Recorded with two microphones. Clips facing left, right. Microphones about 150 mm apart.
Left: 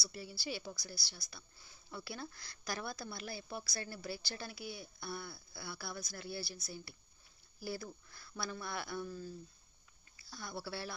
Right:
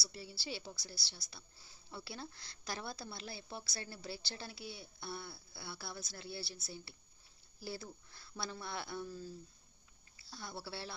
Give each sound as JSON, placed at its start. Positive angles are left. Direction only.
{"t": 0.0, "sound": "a woman's voice", "side_deg": -25}